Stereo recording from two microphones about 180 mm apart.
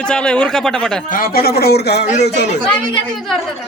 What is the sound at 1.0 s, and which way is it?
A man's voice, 50° left (ahead or behind).